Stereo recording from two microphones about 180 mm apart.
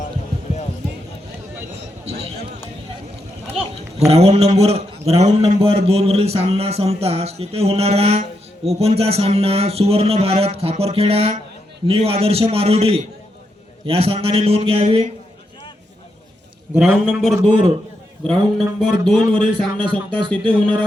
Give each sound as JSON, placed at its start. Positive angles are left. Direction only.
{"t": 4.1, "sound": "a man's voice", "side_deg": -35}
{"t": 16.7, "sound": "a man's voice", "side_deg": -10}
{"t": 19.7, "sound": "music", "side_deg": -25}